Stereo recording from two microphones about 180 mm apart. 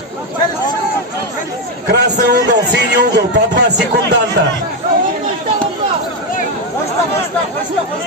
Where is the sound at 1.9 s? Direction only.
65° right (ahead or behind).